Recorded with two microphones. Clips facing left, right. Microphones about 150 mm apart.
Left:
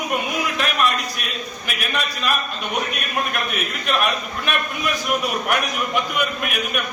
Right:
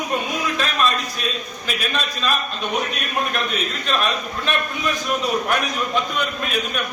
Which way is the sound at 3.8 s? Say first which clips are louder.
Left 2 dB; 15° left (ahead or behind).